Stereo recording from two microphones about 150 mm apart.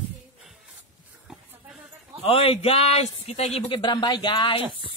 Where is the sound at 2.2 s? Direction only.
40° left (ahead or behind).